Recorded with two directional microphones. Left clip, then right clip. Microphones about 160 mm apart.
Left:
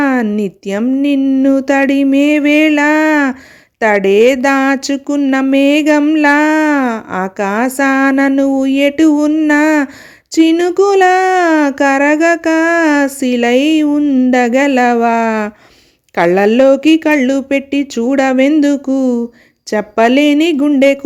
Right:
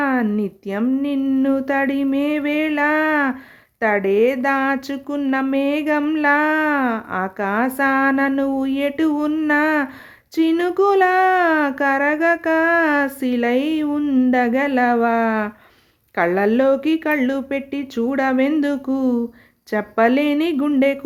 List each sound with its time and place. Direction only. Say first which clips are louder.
0.0 s a sound: left 6 dB; 45° left (ahead or behind)
0.3 s speech: left 7 dB; 45° left (ahead or behind)
1.2 s speech: left 7 dB; 35° left (ahead or behind)
14.3 s speech: left 8 dB; 40° left (ahead or behind)